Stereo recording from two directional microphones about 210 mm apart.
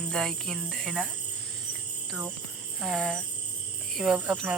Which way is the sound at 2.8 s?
Centre (ahead or behind).